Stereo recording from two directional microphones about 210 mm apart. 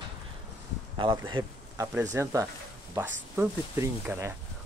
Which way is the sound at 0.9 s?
20° right (ahead or behind).